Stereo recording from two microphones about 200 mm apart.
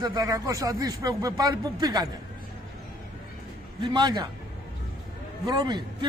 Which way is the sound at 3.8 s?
20° right (ahead or behind).